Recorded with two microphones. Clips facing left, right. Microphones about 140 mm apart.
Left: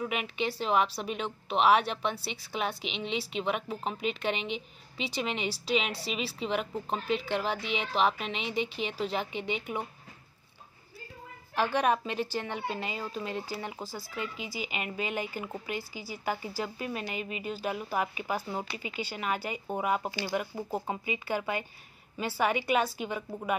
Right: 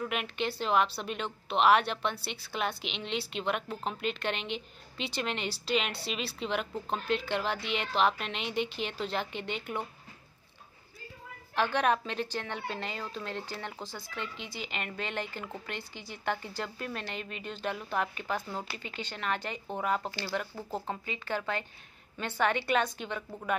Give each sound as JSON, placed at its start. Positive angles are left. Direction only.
{"t": 0.0, "sound": "a woman's voice", "side_deg": 0}
{"t": 11.5, "sound": "a woman's voice", "side_deg": 10}